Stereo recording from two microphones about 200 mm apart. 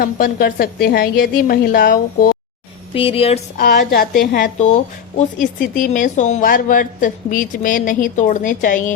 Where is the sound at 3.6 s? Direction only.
50° left (ahead or behind).